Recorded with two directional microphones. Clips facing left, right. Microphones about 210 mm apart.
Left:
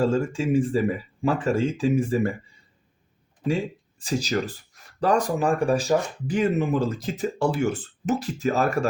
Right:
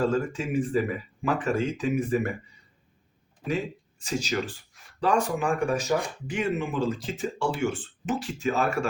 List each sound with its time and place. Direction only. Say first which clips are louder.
0.1 s speech: left 4 dB; 30° left (ahead or behind)
4.0 s speech: left 3 dB; 35° left (ahead or behind)